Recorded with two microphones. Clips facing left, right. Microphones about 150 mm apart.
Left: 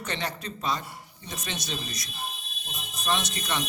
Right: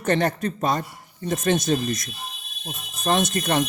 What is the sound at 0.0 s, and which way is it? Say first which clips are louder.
A man's voice: right 11 dB; 50° right (ahead or behind).